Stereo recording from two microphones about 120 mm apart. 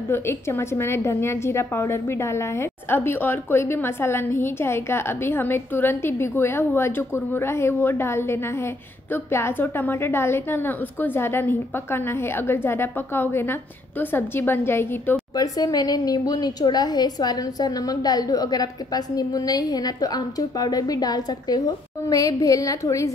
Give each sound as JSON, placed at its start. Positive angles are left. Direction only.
{"t": 0.1, "sound": "a woman's voice", "side_deg": 20}
{"t": 15.3, "sound": "a woman's voice", "side_deg": 30}